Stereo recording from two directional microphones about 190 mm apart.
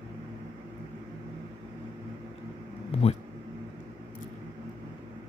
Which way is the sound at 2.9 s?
30° left (ahead or behind).